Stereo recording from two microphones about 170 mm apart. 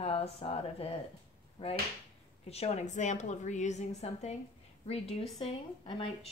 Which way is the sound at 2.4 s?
40° left (ahead or behind).